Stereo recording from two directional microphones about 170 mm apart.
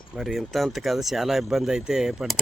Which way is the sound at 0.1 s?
5° right (ahead or behind).